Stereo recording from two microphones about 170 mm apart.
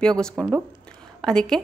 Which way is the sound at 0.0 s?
5° left (ahead or behind).